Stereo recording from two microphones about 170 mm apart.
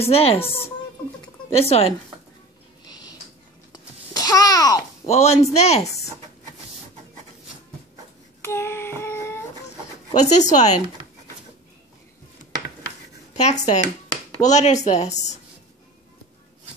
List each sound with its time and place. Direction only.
0.0 s speech: 35° left (ahead or behind)
1.6 s speech: 35° left (ahead or behind)
2.9 s a sound: 25° left (ahead or behind)
3.7 s babbling: 20° left (ahead or behind)
5.1 s speech: 40° left (ahead or behind)
8.4 s child singing: 15° left (ahead or behind)
10.1 s a woman's voice: 45° left (ahead or behind)
13.3 s a woman's voice: 40° left (ahead or behind)